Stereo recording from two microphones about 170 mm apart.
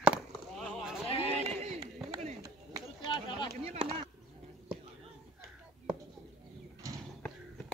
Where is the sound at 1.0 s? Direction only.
35° left (ahead or behind).